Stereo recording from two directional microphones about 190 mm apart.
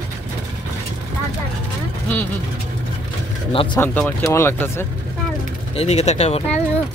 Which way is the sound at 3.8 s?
10° left (ahead or behind).